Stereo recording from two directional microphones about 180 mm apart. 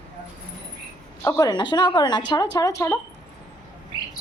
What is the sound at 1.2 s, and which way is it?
Speech, 20° left (ahead or behind).